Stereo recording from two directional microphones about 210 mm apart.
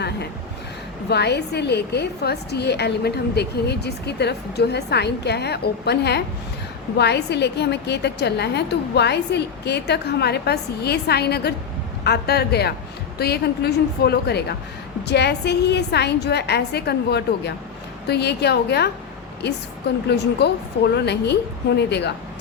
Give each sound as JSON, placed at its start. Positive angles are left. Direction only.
{"t": 1.1, "sound": "a woman's voice", "side_deg": 50}
{"t": 20.1, "sound": "a woman's voice", "side_deg": 55}